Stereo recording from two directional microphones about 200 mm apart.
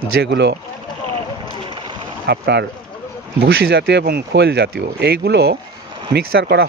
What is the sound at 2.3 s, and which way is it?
Speech, 55° right (ahead or behind).